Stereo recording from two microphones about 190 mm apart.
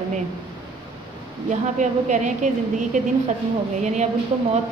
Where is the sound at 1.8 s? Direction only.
40° right (ahead or behind).